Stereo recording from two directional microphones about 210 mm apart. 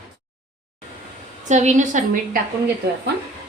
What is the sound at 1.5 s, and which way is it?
Speech, 35° right (ahead or behind).